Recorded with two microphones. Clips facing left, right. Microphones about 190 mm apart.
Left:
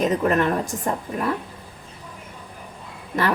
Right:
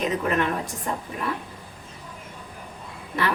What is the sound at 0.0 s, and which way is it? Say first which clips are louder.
Speech: left 4 dB; 40° left (ahead or behind).